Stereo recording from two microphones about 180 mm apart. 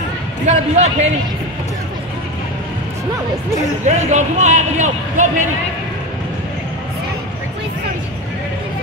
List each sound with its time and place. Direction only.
0.5 s speech: 40° right (ahead or behind)
3.8 s speech: 40° right (ahead or behind)